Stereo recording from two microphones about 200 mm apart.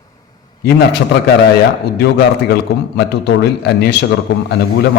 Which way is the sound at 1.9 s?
50° left (ahead or behind).